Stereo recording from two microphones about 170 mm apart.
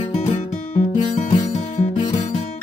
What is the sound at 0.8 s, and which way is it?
Music, 50° left (ahead or behind).